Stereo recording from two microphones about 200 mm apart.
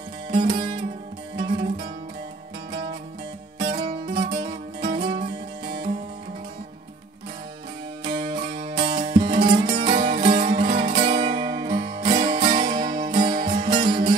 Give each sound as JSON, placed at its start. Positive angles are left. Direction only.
{"t": 0.3, "sound": "music", "side_deg": -25}
{"t": 8.0, "sound": "music", "side_deg": -25}
{"t": 11.8, "sound": "music", "side_deg": -45}
{"t": 12.1, "sound": "music", "side_deg": -20}